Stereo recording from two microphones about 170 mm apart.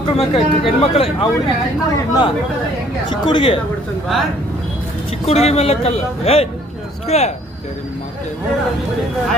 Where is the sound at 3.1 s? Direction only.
30° left (ahead or behind).